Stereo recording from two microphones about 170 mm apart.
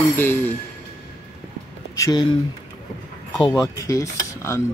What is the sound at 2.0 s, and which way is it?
Speech, 20° left (ahead or behind).